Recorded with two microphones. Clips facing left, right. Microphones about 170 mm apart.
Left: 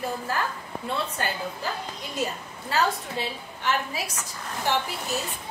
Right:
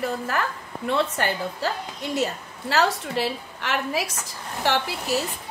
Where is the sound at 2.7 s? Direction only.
85° right.